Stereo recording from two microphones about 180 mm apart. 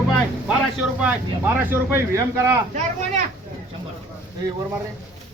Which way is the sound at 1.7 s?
15° right (ahead or behind).